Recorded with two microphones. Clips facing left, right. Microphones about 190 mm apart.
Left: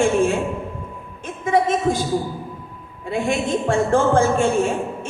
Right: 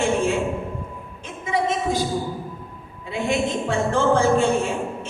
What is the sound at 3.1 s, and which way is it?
Speech, 50° left (ahead or behind).